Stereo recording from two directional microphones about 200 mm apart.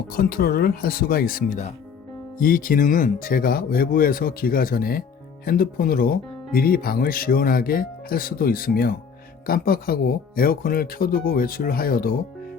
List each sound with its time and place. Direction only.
0.1 s speech: 45° left (ahead or behind)